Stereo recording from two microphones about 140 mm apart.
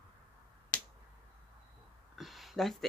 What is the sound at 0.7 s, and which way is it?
Finger snapping, 65° left (ahead or behind).